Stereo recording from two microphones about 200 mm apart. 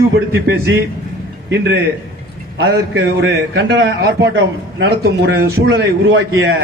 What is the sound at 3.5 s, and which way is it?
Speech, 65° right (ahead or behind).